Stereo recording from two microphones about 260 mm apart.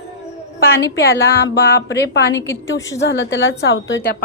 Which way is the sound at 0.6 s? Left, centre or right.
Left.